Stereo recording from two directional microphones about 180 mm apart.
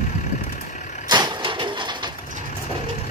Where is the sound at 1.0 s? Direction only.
25° right (ahead or behind).